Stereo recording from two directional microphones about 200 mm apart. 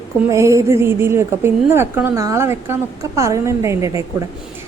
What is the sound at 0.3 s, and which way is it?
Speech, 15° right (ahead or behind).